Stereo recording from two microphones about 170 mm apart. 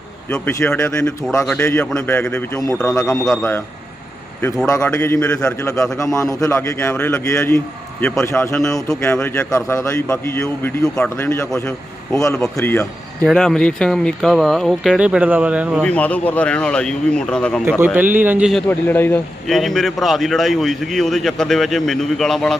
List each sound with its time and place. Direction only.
0.3 s a man's voice: 5° left (ahead or behind)
0.8 s a man's voice: 15° left (ahead or behind)
4.8 s a man's voice: 10° left (ahead or behind)
6.0 s a man's voice: 20° left (ahead or behind); by 15.8 s 5° right (ahead or behind)
15.8 s a man's voice: 5° left (ahead or behind)
17.7 s a man's voice: 10° right (ahead or behind)
18.7 s a man's voice: 10° left (ahead or behind)
19.5 s a man's voice: centre (ahead or behind)